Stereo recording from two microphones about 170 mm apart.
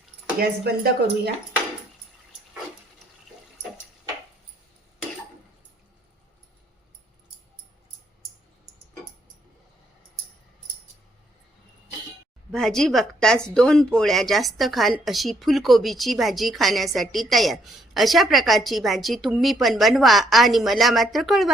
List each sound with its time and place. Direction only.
0.3 s speech: 70° right (ahead or behind)
12.5 s a woman's voice: 5° left (ahead or behind)